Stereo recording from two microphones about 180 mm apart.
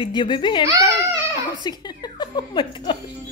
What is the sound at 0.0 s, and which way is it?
A child's voice, 25° left (ahead or behind).